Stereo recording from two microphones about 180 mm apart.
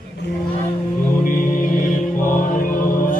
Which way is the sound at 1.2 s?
45° left (ahead or behind).